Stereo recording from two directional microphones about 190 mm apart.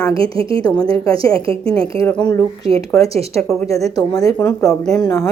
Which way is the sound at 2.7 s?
30° right (ahead or behind).